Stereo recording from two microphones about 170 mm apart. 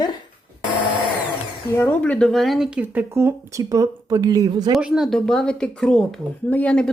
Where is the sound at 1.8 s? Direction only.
10° left (ahead or behind); by 4.8 s 25° right (ahead or behind).